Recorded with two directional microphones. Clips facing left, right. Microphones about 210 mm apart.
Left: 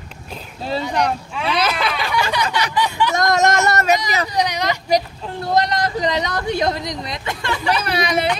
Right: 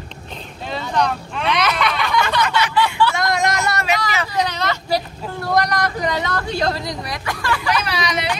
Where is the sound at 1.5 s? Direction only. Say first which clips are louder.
Right 1 dB; 30° left (ahead or behind).